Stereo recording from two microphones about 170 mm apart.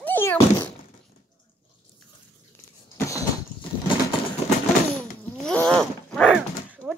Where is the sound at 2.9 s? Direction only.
20° left (ahead or behind).